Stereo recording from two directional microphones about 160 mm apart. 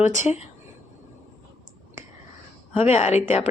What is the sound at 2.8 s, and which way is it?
Speech, 40° left (ahead or behind).